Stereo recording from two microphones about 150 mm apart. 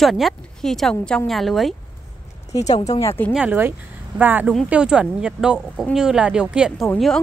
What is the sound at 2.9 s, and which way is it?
Speech, 15° left (ahead or behind).